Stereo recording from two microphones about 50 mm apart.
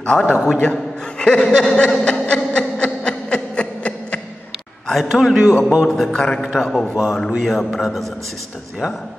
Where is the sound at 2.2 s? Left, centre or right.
Centre.